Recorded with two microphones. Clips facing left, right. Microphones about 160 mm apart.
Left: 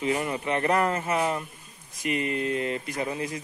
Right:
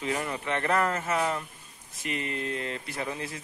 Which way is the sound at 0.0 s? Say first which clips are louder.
Left 4 dB; 15° left (ahead or behind).